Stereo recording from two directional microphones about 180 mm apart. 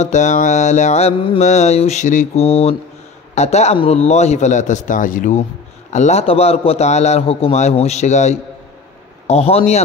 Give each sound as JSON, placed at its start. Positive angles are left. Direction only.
{"t": 0.0, "sound": "mantra", "side_deg": 40}